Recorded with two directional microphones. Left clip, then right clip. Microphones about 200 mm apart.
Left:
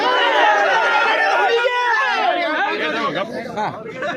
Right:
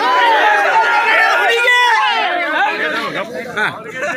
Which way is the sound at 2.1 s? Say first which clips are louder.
Right 2 dB; 55° left (ahead or behind).